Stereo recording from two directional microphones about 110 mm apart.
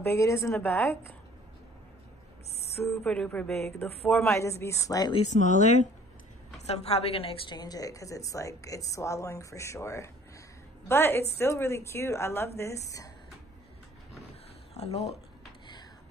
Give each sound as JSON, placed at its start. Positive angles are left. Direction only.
{"t": 0.0, "sound": "a woman's voice", "side_deg": 25}
{"t": 2.9, "sound": "a sound", "side_deg": 10}
{"t": 4.1, "sound": "speech", "side_deg": 5}
{"t": 4.4, "sound": "a woman's voice", "side_deg": 25}
{"t": 5.1, "sound": "speech", "side_deg": 90}
{"t": 6.6, "sound": "a woman's voice", "side_deg": 70}
{"t": 7.5, "sound": "a woman's voice", "side_deg": 35}
{"t": 14.7, "sound": "speech", "side_deg": 75}